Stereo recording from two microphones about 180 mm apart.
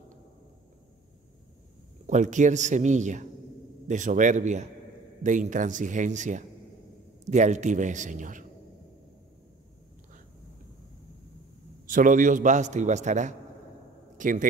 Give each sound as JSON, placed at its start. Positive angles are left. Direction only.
{"t": 2.0, "sound": "a man's voice", "side_deg": -40}
{"t": 11.8, "sound": "a man's voice", "side_deg": -50}